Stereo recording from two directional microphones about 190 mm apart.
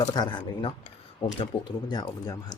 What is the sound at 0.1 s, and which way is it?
Speech, 25° left (ahead or behind).